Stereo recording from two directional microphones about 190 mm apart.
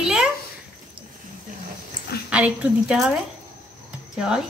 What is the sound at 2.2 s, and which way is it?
A woman's voice, 5° right (ahead or behind).